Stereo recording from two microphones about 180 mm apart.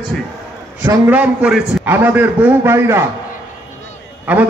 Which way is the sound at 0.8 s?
10° right (ahead or behind).